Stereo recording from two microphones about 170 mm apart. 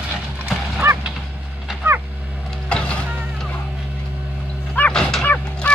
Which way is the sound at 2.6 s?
5° left (ahead or behind).